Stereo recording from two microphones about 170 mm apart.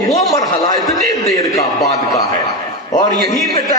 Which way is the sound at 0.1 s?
20° left (ahead or behind).